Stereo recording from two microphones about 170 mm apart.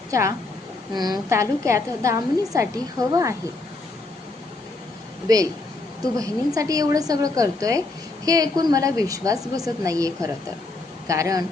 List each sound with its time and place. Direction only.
0.1 s a woman's voice: 20° right (ahead or behind)
5.3 s a woman's voice: 20° right (ahead or behind)